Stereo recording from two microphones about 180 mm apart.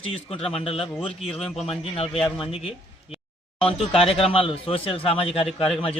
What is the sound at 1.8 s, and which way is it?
A man's voice, 30° left (ahead or behind).